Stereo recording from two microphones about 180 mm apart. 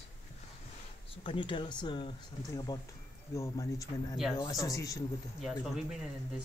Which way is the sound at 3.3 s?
15° left (ahead or behind).